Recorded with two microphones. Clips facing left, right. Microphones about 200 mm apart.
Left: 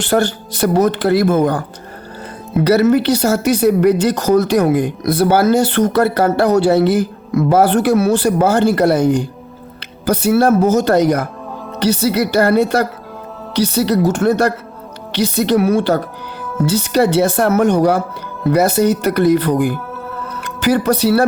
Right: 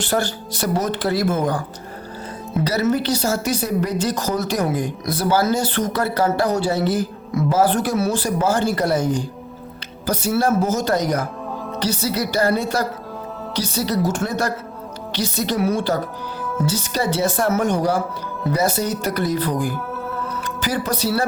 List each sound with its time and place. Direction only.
0.0 s speech: 60° left (ahead or behind)